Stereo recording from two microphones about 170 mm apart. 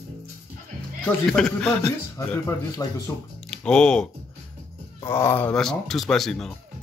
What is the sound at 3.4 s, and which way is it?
Speech, 5° left (ahead or behind).